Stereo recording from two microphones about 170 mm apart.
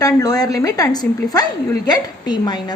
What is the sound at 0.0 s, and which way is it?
A woman's voice, 20° left (ahead or behind).